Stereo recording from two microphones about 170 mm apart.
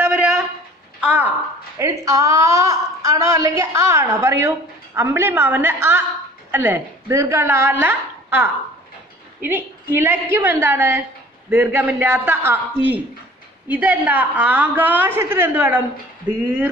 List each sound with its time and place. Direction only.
0.0 s a sound: 5° right (ahead or behind)
1.8 s a woman's voice: 20° right (ahead or behind)
13.7 s a woman's voice: 10° right (ahead or behind)